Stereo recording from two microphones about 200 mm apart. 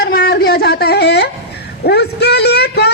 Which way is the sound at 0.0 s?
55° left (ahead or behind).